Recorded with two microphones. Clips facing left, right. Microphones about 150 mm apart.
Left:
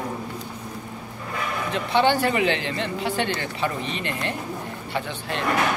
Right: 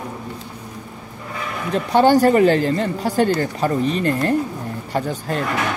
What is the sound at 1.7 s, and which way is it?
Speech, 40° right (ahead or behind).